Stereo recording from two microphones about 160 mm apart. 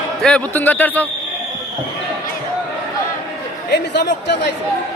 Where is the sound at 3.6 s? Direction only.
90° left.